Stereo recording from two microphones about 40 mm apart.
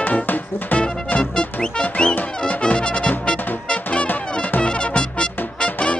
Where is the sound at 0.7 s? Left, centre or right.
Left.